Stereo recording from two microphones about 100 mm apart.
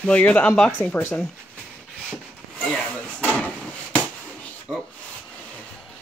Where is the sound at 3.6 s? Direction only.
15° left (ahead or behind).